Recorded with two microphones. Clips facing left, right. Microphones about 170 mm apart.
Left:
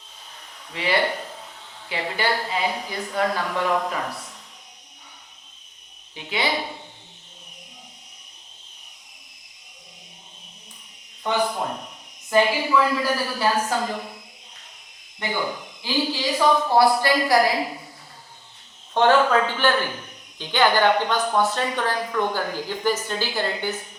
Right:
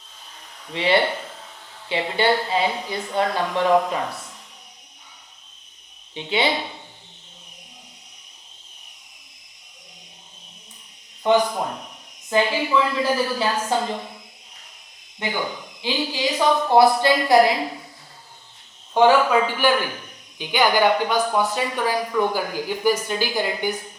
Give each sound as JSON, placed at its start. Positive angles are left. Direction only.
{"t": 0.7, "sound": "a woman's voice", "side_deg": -25}
{"t": 6.1, "sound": "a woman's voice", "side_deg": -25}
{"t": 11.3, "sound": "a woman's voice", "side_deg": -20}
{"t": 15.2, "sound": "a woman's voice", "side_deg": -20}
{"t": 18.9, "sound": "speech", "side_deg": -10}